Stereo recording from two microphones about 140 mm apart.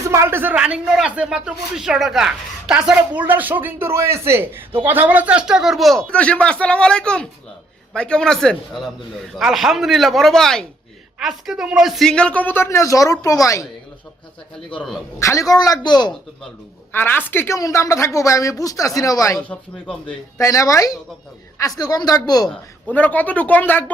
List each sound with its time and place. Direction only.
0.0 s speech: 20° right (ahead or behind); by 13.7 s 25° left (ahead or behind)
14.8 s speech: centre (ahead or behind)
15.2 s a woman's voice: 20° left (ahead or behind)
16.9 s a woman's voice: 15° left (ahead or behind)
19.4 s speech: 5° left (ahead or behind)
20.4 s a woman's voice: 25° left (ahead or behind)
22.4 s speech: 10° left (ahead or behind)